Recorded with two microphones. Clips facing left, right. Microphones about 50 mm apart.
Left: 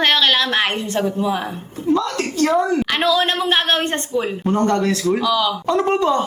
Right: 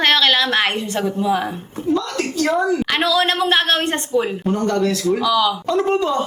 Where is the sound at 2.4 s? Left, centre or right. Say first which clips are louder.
Left 2 dB; centre.